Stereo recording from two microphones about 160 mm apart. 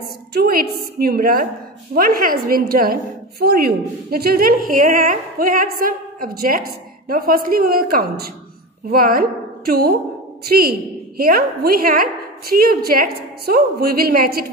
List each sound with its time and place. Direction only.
0.3 s a woman's voice: 70° right (ahead or behind)
3.3 s a woman's voice: 75° right (ahead or behind)